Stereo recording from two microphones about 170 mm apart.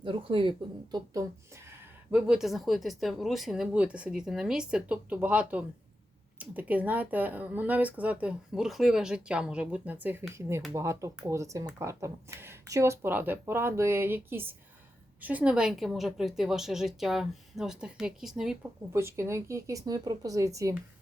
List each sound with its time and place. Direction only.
0.0 s speech: 30° right (ahead or behind)
1.7 s speech: 5° right (ahead or behind)
18.9 s speech: 15° right (ahead or behind)